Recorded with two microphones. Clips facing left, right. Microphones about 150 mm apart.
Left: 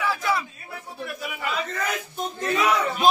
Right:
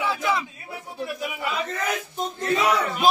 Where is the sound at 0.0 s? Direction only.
20° right (ahead or behind).